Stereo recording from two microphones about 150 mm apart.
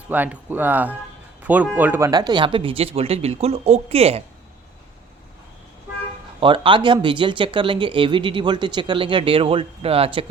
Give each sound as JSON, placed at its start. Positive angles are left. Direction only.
{"t": 0.1, "sound": "speech", "side_deg": -10}
{"t": 2.0, "sound": "speech", "side_deg": -25}
{"t": 6.4, "sound": "speech", "side_deg": -35}